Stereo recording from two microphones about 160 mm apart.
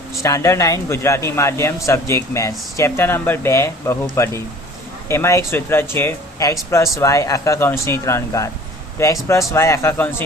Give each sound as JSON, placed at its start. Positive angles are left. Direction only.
{"t": 0.2, "sound": "speech", "side_deg": 20}